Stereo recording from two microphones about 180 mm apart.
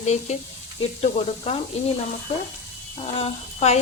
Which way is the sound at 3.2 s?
35° left (ahead or behind).